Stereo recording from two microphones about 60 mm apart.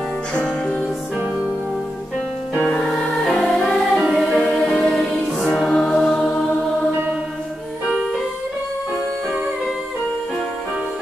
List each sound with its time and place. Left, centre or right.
0.3 s music: centre
2.8 s music: centre
4.0 s music: centre
4.6 s music: centre